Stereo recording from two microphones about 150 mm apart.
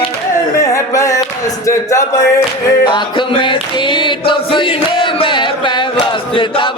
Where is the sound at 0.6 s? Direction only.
20° left (ahead or behind).